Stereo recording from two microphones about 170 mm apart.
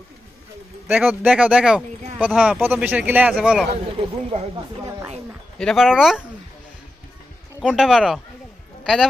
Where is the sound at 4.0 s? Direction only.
35° right (ahead or behind).